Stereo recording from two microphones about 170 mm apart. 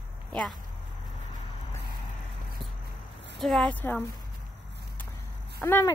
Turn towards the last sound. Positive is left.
turn(degrees=15)  # may be behind; listen again after turning